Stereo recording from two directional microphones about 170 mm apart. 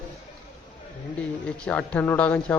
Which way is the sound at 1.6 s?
10° left (ahead or behind).